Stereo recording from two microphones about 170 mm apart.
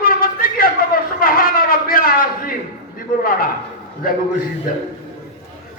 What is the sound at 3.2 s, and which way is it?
Speech, 60° left (ahead or behind).